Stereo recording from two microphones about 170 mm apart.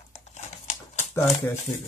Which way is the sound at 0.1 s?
45° left (ahead or behind).